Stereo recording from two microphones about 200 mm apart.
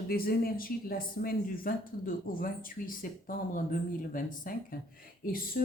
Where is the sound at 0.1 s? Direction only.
50° left (ahead or behind).